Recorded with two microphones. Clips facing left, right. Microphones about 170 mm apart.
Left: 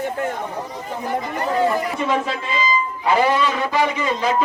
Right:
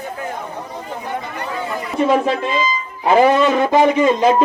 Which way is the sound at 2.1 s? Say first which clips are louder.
Right 6 dB; 45° right (ahead or behind).